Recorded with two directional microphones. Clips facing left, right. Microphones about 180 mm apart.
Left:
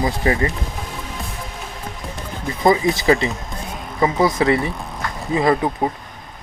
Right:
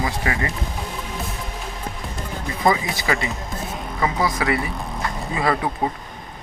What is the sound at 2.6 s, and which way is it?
Speech, 35° left (ahead or behind).